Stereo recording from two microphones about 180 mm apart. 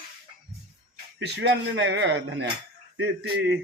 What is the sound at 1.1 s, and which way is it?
Speech, 70° right (ahead or behind).